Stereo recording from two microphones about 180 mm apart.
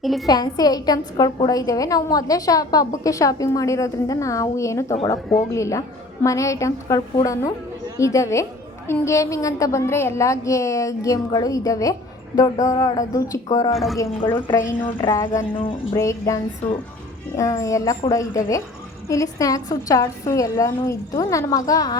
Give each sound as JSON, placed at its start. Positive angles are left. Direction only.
{"t": 0.0, "sound": "a woman's voice", "side_deg": 0}
{"t": 0.3, "sound": "a woman's voice", "side_deg": 20}
{"t": 19.0, "sound": "a woman's voice", "side_deg": 20}